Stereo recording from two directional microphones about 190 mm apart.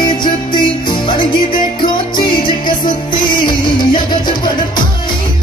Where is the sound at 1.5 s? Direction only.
45° left (ahead or behind).